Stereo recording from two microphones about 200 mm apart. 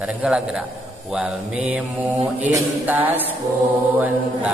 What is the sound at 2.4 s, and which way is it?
Mantra, 10° right (ahead or behind).